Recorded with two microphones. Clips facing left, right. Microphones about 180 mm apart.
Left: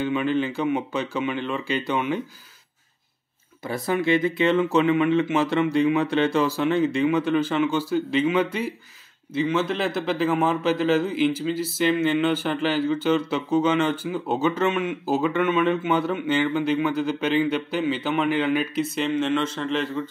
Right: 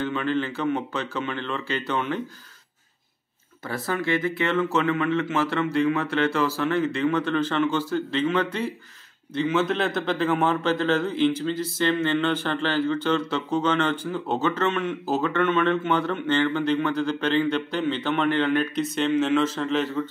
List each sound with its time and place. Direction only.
0.0 s a man's voice: 15° left (ahead or behind)
3.6 s a man's voice: 15° left (ahead or behind); by 20.1 s centre (ahead or behind)